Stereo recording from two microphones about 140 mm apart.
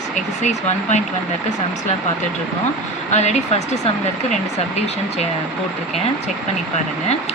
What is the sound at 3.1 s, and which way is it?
Speech, 55° left (ahead or behind).